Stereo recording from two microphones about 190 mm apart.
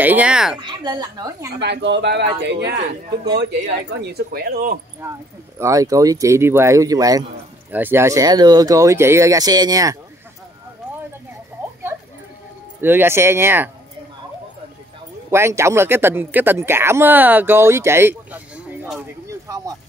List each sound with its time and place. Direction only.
0.0 s speech: 10° right (ahead or behind)
0.6 s a woman's voice: 25° right (ahead or behind)
1.6 s speech: 65° right (ahead or behind)
4.0 s speech: 55° right (ahead or behind)
5.0 s speech: 15° right (ahead or behind)
12.8 s speech: 10° right (ahead or behind)
15.3 s speech: 15° right (ahead or behind)